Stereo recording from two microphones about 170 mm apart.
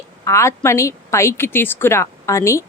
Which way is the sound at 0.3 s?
15° left (ahead or behind).